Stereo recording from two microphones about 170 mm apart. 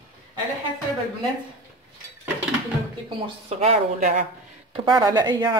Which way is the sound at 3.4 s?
40° right (ahead or behind).